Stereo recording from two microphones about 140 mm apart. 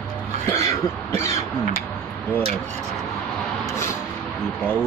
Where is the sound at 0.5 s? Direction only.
20° left (ahead or behind).